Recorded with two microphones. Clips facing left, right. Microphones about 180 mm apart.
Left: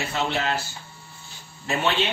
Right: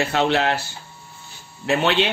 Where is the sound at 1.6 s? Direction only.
80° right.